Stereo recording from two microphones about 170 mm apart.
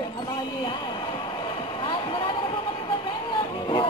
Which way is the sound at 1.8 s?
25° left (ahead or behind).